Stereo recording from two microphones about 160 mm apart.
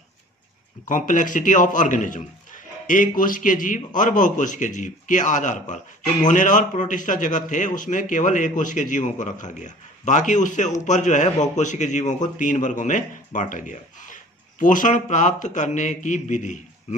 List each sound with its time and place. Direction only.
0.8 s a man's voice: 55° left (ahead or behind)